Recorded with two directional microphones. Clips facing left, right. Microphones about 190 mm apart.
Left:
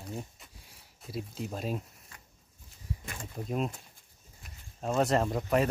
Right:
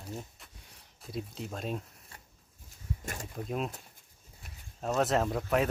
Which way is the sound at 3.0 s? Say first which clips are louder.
Right 2 dB; 45° right (ahead or behind).